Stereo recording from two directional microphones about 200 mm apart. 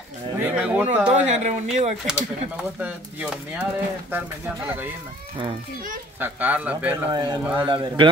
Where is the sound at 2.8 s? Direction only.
10° right (ahead or behind).